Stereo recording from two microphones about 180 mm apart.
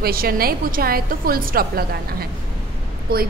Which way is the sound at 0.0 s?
55° right (ahead or behind).